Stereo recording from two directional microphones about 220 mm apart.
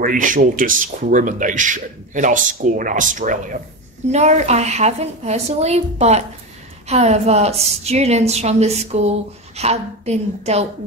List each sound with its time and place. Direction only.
0.0 s a woman's voice: 35° right (ahead or behind)